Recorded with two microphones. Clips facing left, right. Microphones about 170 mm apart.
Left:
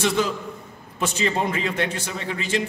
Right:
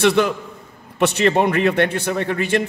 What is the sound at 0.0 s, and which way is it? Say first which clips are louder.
A man's voice: right 6 dB; 65° right (ahead or behind).